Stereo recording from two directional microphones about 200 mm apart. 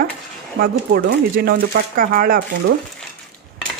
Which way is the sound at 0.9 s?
50° right (ahead or behind).